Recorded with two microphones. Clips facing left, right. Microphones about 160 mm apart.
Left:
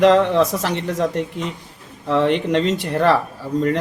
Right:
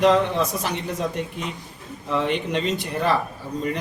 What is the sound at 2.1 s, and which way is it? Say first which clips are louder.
Speech: left 6 dB; 75° left (ahead or behind).